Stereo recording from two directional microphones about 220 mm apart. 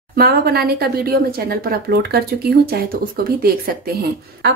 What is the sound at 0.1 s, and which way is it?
Speech, 45° right (ahead or behind).